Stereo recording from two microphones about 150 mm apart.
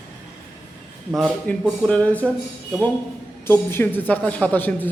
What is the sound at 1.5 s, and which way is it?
Speech, 5° left (ahead or behind).